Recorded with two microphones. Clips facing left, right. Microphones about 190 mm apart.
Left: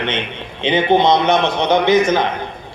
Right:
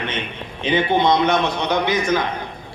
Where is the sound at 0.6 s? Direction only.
20° left (ahead or behind).